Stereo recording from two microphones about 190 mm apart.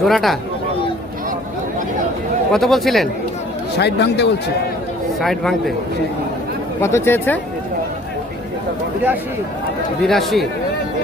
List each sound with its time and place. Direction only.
0.0 s speech: centre (ahead or behind)
2.5 s speech: centre (ahead or behind)
3.8 s speech: 60° left (ahead or behind)
5.2 s speech: centre (ahead or behind)
6.8 s speech: 15° left (ahead or behind)
10.0 s speech: centre (ahead or behind)